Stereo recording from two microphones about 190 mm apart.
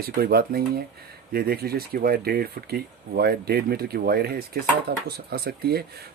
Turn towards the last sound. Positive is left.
turn(degrees=-55)  # may be behind; listen again after turning